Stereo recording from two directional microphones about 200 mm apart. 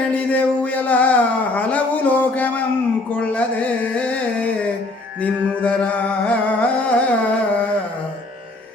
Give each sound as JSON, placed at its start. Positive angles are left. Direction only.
{"t": 0.1, "sound": "a sound", "side_deg": 5}
{"t": 3.1, "sound": "carnatic music", "side_deg": 5}
{"t": 5.2, "sound": "music", "side_deg": 5}